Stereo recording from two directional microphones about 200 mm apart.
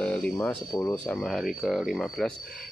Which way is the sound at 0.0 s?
5° left (ahead or behind).